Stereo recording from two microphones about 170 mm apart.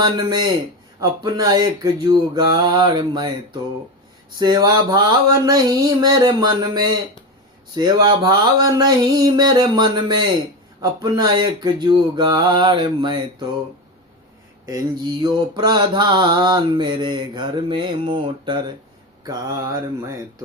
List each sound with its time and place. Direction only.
0.0 s mantra: 25° right (ahead or behind)
15.2 s mantra: 25° right (ahead or behind)